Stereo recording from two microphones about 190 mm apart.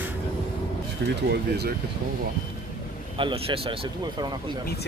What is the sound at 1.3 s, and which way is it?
Speech, 60° right (ahead or behind).